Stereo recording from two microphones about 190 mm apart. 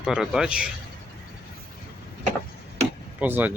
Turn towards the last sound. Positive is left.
turn(degrees=-10)  # may be behind; listen again after turning